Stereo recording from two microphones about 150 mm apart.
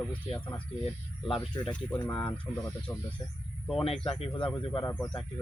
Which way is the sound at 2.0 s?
10° left (ahead or behind).